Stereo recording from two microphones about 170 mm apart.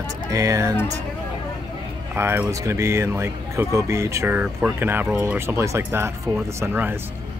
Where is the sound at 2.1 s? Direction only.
15° right (ahead or behind).